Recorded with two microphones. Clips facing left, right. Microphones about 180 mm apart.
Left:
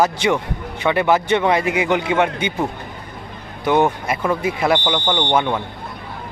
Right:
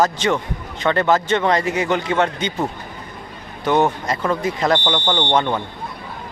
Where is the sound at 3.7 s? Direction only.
10° left (ahead or behind).